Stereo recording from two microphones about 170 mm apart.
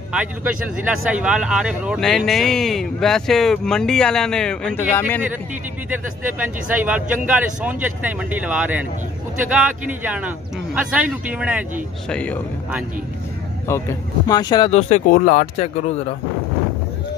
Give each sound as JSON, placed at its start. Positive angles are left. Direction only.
{"t": 0.1, "sound": "speech", "side_deg": -5}
{"t": 5.9, "sound": "speech", "side_deg": -10}
{"t": 12.1, "sound": "a man's voice", "side_deg": 5}
{"t": 13.7, "sound": "speech", "side_deg": 15}
{"t": 14.7, "sound": "speech", "side_deg": 40}